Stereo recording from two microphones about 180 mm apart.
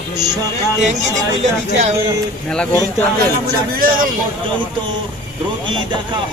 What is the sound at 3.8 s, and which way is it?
Speech, 50° right (ahead or behind).